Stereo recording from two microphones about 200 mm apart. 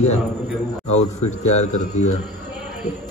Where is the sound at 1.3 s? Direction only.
35° left (ahead or behind).